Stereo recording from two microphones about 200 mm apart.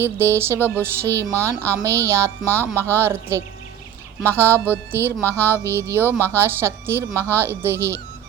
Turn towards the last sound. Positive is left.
turn(degrees=-10)  # may be behind; listen again after turning